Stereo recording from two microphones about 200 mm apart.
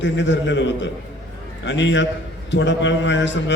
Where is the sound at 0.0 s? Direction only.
65° left (ahead or behind).